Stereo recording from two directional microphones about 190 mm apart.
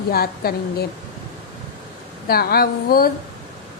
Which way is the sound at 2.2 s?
55° left (ahead or behind).